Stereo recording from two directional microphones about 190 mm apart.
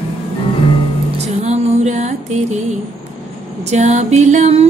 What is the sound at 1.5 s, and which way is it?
Music, 40° right (ahead or behind).